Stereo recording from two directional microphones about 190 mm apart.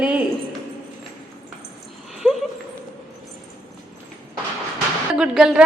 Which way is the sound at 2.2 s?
Centre (ahead or behind).